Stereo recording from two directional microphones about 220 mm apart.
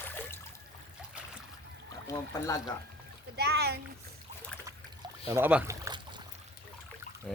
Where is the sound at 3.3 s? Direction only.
45° right (ahead or behind).